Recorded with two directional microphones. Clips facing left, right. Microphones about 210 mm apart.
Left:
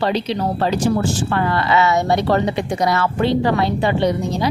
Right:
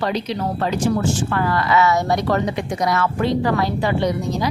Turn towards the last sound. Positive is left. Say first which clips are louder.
# left 2 dB
turn(degrees=30)  # may be behind; listen again after turning